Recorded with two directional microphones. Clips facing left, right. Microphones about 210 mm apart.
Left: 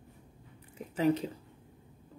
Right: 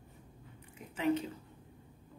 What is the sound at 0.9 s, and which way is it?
Speech, 35° left (ahead or behind).